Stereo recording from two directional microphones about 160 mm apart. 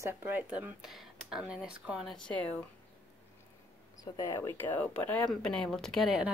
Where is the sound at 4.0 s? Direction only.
20° left (ahead or behind); by 6.3 s 5° right (ahead or behind).